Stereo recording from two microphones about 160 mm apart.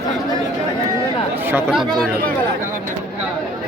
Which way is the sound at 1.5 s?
5° right (ahead or behind).